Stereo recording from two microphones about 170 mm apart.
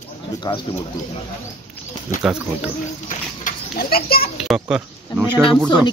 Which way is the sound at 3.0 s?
55° left (ahead or behind).